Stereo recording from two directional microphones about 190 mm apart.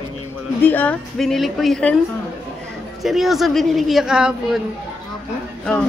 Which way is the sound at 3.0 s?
Centre (ahead or behind).